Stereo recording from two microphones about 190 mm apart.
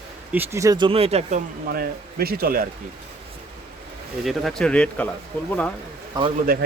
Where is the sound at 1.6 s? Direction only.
55° right (ahead or behind).